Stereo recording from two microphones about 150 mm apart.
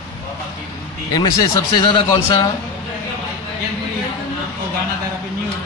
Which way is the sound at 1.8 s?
30° left (ahead or behind).